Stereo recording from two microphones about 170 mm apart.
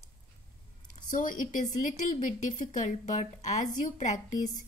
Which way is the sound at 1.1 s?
55° left (ahead or behind).